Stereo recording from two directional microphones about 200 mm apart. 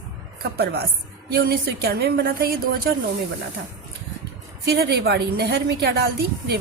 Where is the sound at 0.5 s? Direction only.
50° right (ahead or behind).